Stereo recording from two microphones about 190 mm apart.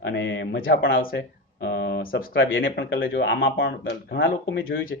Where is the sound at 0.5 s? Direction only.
50° left (ahead or behind); by 4.8 s 70° left (ahead or behind).